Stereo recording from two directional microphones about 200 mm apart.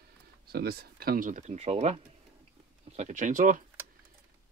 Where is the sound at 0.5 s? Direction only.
50° right (ahead or behind).